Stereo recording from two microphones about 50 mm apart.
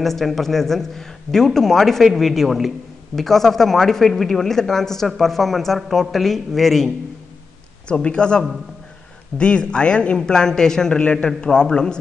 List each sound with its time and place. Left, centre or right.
0.0 s speech: centre
7.9 s a man's voice: centre